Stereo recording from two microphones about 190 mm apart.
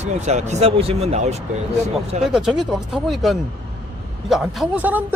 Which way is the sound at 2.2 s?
5° right (ahead or behind).